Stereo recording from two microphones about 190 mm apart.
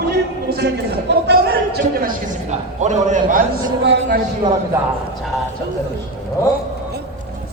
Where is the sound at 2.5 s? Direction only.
40° right (ahead or behind).